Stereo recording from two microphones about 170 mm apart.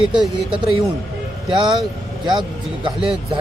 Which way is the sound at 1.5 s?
25° right (ahead or behind).